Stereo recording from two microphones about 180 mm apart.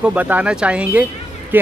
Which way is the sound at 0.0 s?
10° right (ahead or behind).